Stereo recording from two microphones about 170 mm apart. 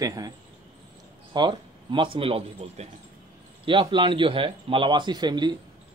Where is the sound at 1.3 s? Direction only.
25° right (ahead or behind).